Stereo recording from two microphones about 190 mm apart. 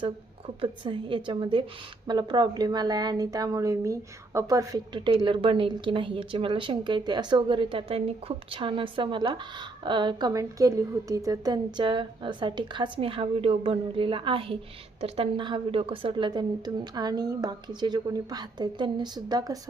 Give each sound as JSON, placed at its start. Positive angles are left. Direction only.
{"t": 0.6, "sound": "a woman's voice", "side_deg": -25}